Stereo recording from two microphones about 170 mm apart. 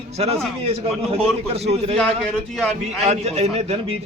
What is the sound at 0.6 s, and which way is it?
A man's voice, 35° right (ahead or behind).